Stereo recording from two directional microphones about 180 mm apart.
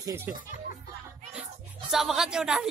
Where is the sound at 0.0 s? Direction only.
15° right (ahead or behind).